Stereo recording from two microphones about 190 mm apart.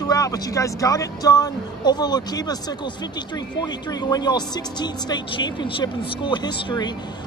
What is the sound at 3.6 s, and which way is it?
Speech, 20° left (ahead or behind).